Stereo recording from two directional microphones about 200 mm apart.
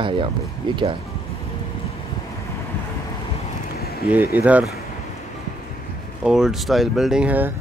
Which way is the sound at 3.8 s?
50° left (ahead or behind).